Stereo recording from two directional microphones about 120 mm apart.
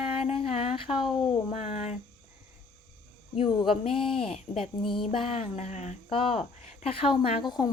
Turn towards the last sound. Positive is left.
turn(degrees=55)  # may be behind; listen again after turning